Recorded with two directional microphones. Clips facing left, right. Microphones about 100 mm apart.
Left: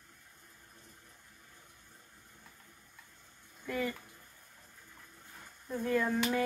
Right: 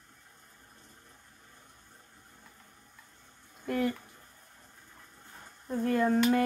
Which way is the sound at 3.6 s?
55° right (ahead or behind).